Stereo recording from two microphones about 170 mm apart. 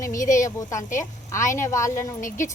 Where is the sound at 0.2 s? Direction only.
50° left (ahead or behind).